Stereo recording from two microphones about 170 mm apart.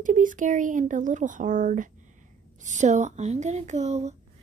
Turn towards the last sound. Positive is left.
turn(degrees=-40)  # may be behind; listen again after turning